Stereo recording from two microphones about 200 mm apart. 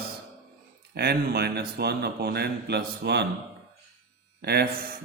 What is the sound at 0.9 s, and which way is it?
Mantra, 50° right (ahead or behind).